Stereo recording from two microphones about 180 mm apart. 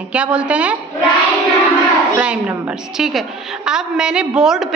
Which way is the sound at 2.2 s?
5° right (ahead or behind).